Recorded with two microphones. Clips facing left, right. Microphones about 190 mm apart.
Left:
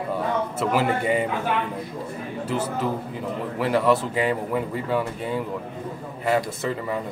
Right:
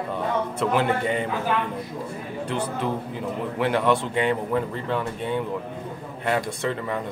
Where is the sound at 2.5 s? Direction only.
5° left (ahead or behind).